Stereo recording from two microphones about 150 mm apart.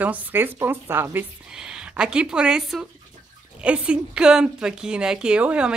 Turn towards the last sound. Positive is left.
turn(degrees=-5)  # may be behind; listen again after turning